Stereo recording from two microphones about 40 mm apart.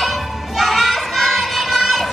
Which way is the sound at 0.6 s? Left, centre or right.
Centre.